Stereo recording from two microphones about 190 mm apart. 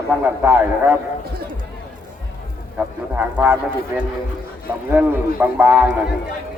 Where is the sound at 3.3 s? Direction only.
10° right (ahead or behind).